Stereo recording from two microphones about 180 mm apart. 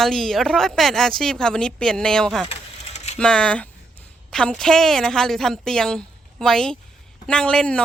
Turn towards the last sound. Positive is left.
turn(degrees=5)  # may be behind; listen again after turning